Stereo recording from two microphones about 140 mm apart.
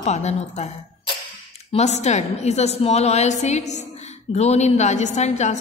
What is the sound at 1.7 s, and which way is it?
A woman's voice, 50° left (ahead or behind).